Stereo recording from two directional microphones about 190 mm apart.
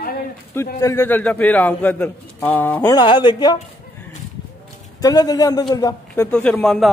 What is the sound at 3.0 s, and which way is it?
Speech, 20° left (ahead or behind).